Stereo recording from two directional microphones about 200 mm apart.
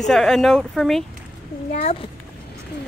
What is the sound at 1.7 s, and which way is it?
Speech, 40° left (ahead or behind).